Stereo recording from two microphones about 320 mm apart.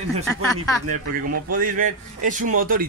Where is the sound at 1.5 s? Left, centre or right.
Right.